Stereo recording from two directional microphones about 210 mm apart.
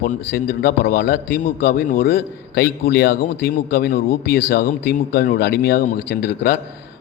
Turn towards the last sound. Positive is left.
turn(degrees=45)  # may be behind; listen again after turning